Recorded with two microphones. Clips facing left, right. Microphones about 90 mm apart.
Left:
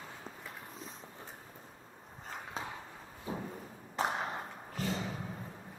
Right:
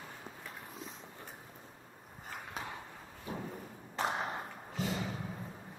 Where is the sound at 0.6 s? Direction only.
10° right (ahead or behind).